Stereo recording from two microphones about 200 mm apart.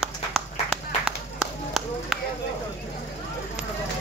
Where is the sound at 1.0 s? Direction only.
Centre (ahead or behind).